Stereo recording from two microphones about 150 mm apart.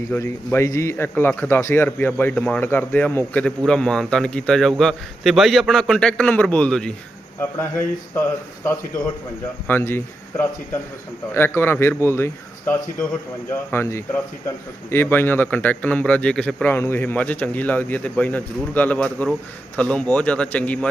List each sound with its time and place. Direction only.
0.1 s speech: 15° left (ahead or behind)
9.6 s speech: 15° left (ahead or behind)